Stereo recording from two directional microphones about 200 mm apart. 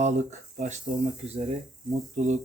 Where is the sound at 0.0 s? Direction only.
35° right (ahead or behind).